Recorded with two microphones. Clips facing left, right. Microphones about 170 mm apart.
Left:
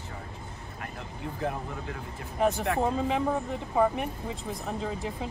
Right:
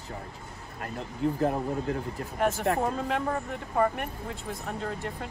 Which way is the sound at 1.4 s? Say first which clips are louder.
Right 6 dB; 40° right (ahead or behind).